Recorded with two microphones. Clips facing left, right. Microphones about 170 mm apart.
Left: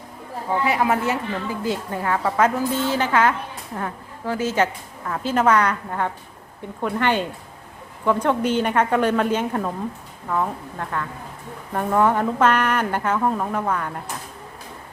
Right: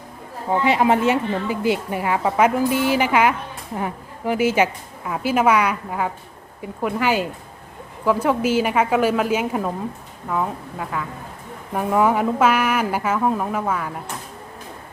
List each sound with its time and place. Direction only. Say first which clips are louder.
0.5 s a woman's voice: right 3 dB; 25° right (ahead or behind); by 14.0 s 5° right (ahead or behind)